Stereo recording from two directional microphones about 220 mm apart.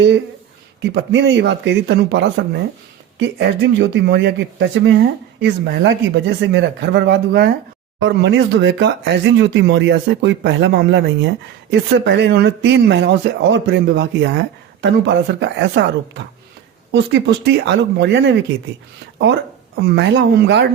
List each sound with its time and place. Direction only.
0.8 s speech: 55° right (ahead or behind)